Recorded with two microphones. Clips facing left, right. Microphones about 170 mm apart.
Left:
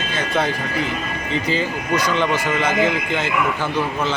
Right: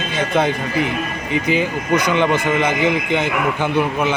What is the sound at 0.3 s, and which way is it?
Speech, 20° right (ahead or behind).